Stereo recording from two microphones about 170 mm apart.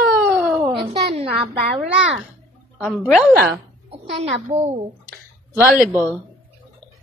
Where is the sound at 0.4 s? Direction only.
10° right (ahead or behind).